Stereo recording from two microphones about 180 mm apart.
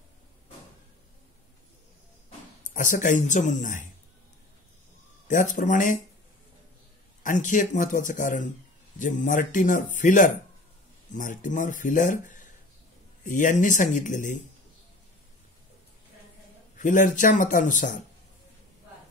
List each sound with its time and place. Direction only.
2.7 s speech: 45° left (ahead or behind)
5.3 s speech: 45° left (ahead or behind)
7.2 s speech: 45° left (ahead or behind)
16.7 s speech: 45° left (ahead or behind)